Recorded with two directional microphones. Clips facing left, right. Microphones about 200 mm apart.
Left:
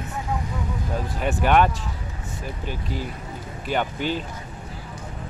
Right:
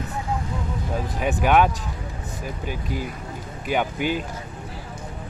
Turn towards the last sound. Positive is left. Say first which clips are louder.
# right 1 dB
turn(degrees=-10)  # may be behind; listen again after turning